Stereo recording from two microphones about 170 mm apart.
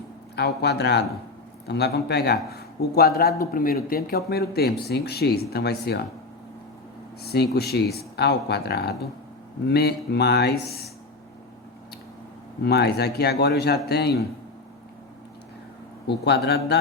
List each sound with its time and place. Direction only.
0.3 s a man's voice: 75° left (ahead or behind)
7.2 s a man's voice: 70° left (ahead or behind)
12.6 s a man's voice: 75° left (ahead or behind)
16.0 s a man's voice: 75° left (ahead or behind)